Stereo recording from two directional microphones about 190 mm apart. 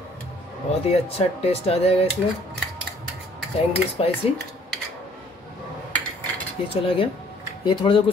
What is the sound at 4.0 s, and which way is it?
Speech, 30° left (ahead or behind).